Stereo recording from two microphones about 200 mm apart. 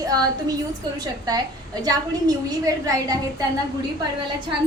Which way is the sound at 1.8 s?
20° right (ahead or behind).